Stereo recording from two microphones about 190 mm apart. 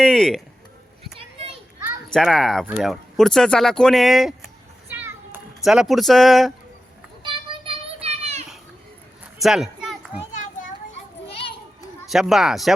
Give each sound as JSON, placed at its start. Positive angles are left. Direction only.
{"t": 0.0, "sound": "speech", "side_deg": 5}
{"t": 2.0, "sound": "speech", "side_deg": 0}
{"t": 4.9, "sound": "children playing", "side_deg": -10}
{"t": 5.5, "sound": "speech", "side_deg": 0}
{"t": 7.2, "sound": "children playing", "side_deg": -25}
{"t": 9.4, "sound": "a sound", "side_deg": 0}
{"t": 12.0, "sound": "speech", "side_deg": 0}